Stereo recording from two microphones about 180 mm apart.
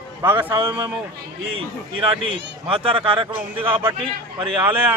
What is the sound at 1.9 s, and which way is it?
A man's voice, 30° right (ahead or behind).